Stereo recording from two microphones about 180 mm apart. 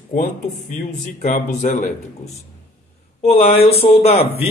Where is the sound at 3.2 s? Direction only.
35° left (ahead or behind).